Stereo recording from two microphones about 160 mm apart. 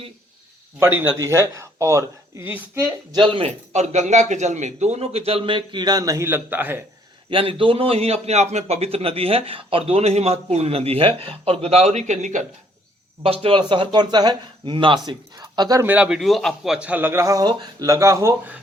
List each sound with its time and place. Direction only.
0.8 s a man's voice: 15° right (ahead or behind)
3.1 s a man's voice: 30° right (ahead or behind)
3.7 s a man's voice: 45° right (ahead or behind); by 6.8 s 10° right (ahead or behind)
7.3 s a man's voice: 35° right (ahead or behind); by 12.5 s 50° right (ahead or behind)
13.2 s speech: 35° right (ahead or behind)
15.8 s a man's voice: 10° right (ahead or behind)